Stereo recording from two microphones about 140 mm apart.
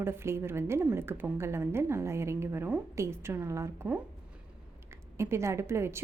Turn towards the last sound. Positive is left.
turn(degrees=-20)  # may be behind; listen again after turning